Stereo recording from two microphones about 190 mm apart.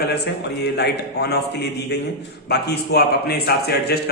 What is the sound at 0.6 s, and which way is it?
A man's voice, 60° left (ahead or behind).